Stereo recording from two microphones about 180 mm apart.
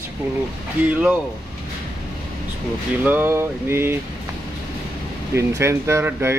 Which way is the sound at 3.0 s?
10° right (ahead or behind).